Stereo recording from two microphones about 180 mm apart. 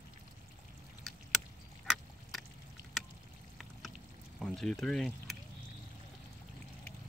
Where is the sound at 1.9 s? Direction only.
Centre (ahead or behind).